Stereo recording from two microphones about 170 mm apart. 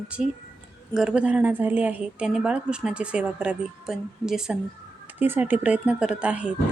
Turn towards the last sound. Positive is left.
turn(degrees=-5)  # may be behind; listen again after turning